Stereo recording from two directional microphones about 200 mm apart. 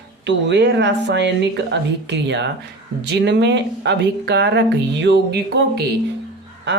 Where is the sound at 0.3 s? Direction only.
60° right (ahead or behind).